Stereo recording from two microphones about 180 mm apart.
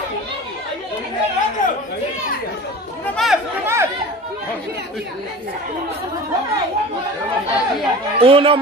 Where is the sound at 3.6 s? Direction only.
15° right (ahead or behind).